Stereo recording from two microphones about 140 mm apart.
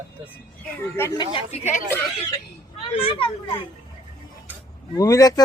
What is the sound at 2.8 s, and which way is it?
Speech, 40° left (ahead or behind).